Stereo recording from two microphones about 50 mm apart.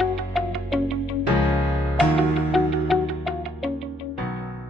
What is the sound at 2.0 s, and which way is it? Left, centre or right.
Music, centre.